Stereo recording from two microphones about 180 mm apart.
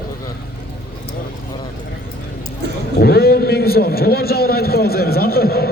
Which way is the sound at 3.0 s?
60° left (ahead or behind).